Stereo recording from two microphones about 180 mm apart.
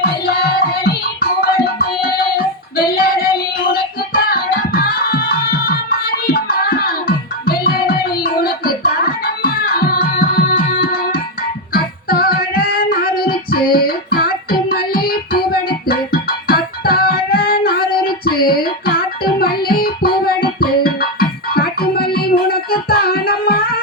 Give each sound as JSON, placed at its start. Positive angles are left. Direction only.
{"t": 0.0, "sound": "music", "side_deg": 60}
{"t": 2.7, "sound": "child singing", "side_deg": 55}
{"t": 3.7, "sound": "music", "side_deg": 55}